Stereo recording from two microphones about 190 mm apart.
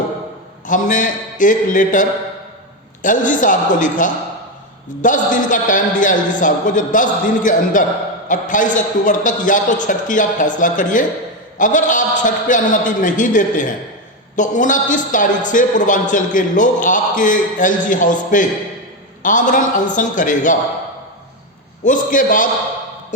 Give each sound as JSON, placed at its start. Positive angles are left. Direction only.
{"t": 0.7, "sound": "a man's voice", "side_deg": 45}
{"t": 21.8, "sound": "a man's voice", "side_deg": 45}